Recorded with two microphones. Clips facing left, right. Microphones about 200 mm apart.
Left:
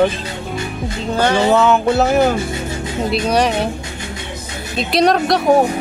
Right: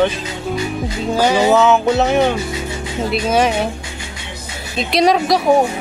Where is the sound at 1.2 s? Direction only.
10° right (ahead or behind).